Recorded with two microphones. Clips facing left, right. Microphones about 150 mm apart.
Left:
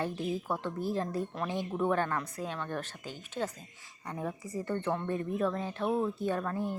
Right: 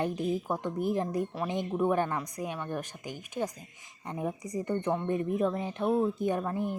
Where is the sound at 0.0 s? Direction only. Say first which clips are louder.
Right 3 dB; 15° right (ahead or behind).